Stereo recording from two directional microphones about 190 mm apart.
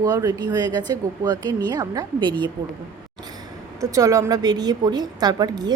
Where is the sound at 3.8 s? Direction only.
15° right (ahead or behind).